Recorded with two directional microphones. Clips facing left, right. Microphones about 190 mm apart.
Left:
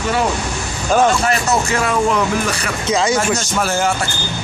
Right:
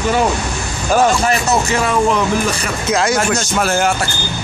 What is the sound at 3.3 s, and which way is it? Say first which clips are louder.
Speech: right 2 dB; 60° right (ahead or behind).